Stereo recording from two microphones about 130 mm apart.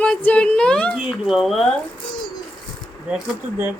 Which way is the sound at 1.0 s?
5° right (ahead or behind).